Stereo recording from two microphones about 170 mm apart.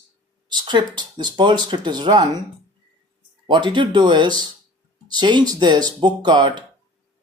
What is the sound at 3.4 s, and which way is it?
Speech, 30° right (ahead or behind).